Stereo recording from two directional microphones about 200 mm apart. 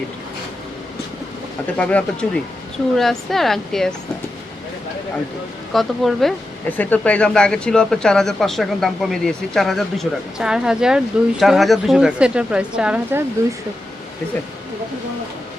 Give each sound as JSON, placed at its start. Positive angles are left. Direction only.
{"t": 1.8, "sound": "speech", "side_deg": 5}
{"t": 5.7, "sound": "speech", "side_deg": 0}